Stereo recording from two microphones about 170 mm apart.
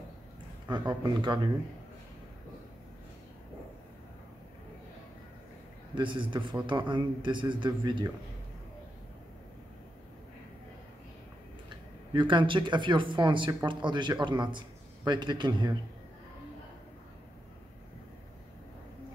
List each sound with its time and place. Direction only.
0.7 s a man's voice: 25° right (ahead or behind)
5.9 s a man's voice: 30° right (ahead or behind)
12.1 s a man's voice: 30° right (ahead or behind)